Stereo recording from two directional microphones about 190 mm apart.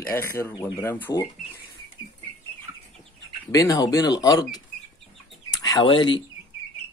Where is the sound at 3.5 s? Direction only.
20° left (ahead or behind).